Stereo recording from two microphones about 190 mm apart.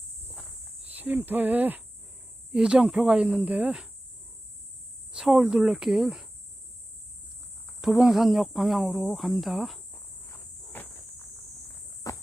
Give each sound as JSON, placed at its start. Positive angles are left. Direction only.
{"t": 0.9, "sound": "speech", "side_deg": -10}
{"t": 5.1, "sound": "speech", "side_deg": -5}
{"t": 7.8, "sound": "speech", "side_deg": 0}
{"t": 10.2, "sound": "walk", "side_deg": 10}
{"t": 12.1, "sound": "walk", "side_deg": 20}